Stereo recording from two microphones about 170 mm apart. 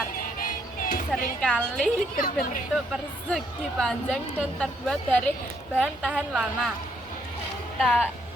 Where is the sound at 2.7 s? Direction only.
Centre (ahead or behind).